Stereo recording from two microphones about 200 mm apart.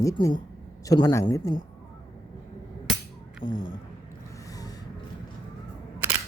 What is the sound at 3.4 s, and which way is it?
Speech, 40° left (ahead or behind).